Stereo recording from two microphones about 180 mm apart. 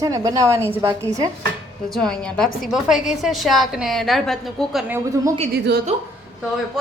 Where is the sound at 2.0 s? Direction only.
5° left (ahead or behind).